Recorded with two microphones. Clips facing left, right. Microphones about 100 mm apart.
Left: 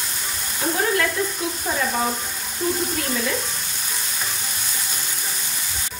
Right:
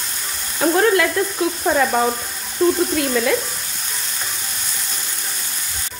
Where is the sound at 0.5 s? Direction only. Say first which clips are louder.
Right 7 dB; 70° right (ahead or behind).